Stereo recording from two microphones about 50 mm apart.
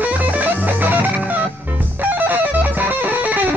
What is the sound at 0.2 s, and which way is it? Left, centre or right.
Music, right.